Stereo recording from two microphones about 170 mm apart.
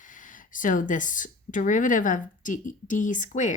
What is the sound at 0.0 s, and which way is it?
Speech, 50° left (ahead or behind).